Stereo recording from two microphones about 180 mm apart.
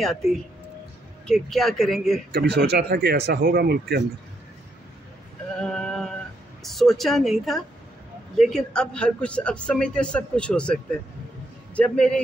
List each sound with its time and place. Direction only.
0.0 s a man's voice: centre (ahead or behind)
2.3 s speech: 65° right (ahead or behind)
5.6 s a sound: 5° left (ahead or behind)
6.6 s a man's voice: centre (ahead or behind)